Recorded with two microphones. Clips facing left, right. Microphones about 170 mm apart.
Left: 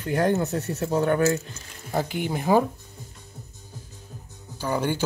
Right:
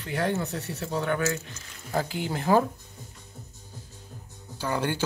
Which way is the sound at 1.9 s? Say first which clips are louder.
Left 2 dB; 20° left (ahead or behind).